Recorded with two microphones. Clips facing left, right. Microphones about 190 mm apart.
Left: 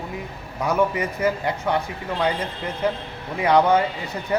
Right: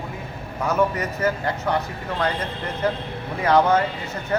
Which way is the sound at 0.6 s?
10° left (ahead or behind).